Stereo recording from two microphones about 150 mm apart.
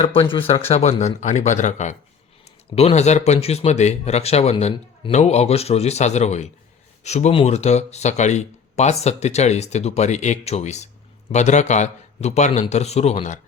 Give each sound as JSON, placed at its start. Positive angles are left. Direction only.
{"t": 0.0, "sound": "speech", "side_deg": 35}
{"t": 0.7, "sound": "speech", "side_deg": 45}